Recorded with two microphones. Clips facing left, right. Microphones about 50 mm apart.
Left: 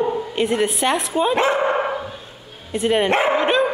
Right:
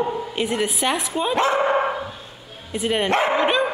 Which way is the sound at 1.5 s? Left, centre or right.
Centre.